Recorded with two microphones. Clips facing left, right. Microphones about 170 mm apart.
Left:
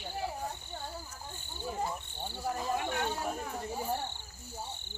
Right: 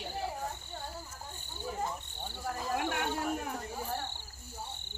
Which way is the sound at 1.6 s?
10° left (ahead or behind).